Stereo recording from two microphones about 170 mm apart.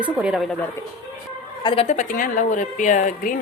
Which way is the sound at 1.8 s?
50° left (ahead or behind).